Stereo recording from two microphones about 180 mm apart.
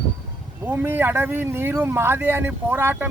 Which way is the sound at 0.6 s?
10° right (ahead or behind).